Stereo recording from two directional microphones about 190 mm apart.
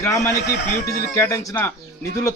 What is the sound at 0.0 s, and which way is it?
Speech, 15° left (ahead or behind).